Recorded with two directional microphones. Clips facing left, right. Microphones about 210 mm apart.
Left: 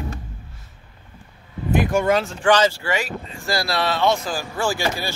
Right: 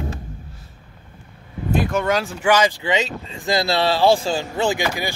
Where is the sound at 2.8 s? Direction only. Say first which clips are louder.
Right 3 dB; 20° right (ahead or behind).